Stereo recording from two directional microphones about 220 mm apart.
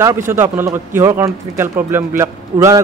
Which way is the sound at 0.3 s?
10° right (ahead or behind).